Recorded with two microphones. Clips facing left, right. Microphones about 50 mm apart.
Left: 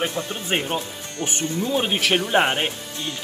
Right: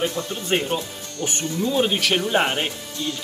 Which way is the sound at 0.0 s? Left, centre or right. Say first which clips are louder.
Right 1 dB; left.